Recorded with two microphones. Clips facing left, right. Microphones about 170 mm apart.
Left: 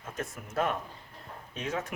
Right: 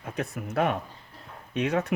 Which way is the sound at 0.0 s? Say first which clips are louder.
Right 6 dB; 65° right (ahead or behind).